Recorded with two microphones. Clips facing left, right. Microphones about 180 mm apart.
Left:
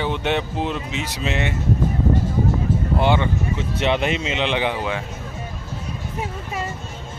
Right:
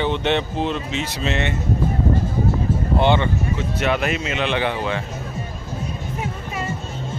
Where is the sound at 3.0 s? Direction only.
5° left (ahead or behind).